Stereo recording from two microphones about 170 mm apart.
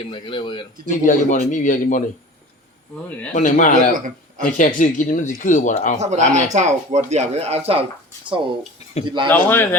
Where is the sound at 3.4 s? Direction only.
45° left (ahead or behind).